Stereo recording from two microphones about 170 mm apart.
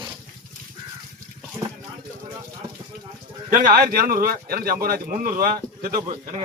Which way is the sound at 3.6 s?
60° right (ahead or behind).